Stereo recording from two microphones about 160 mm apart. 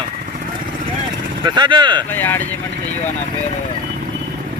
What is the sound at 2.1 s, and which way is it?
Speech, 10° left (ahead or behind).